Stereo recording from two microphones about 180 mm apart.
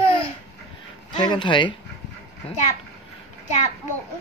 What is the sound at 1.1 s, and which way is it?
Speech, 25° left (ahead or behind).